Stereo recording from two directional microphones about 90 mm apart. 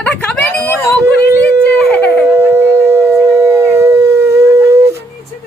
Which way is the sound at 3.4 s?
30° right (ahead or behind).